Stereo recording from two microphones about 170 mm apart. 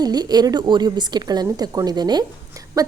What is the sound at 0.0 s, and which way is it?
A woman's voice, 25° right (ahead or behind).